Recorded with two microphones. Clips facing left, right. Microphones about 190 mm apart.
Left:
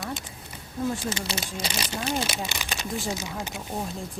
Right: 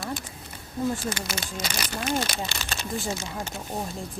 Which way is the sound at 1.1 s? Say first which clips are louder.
Left 1 dB; 30° left (ahead or behind).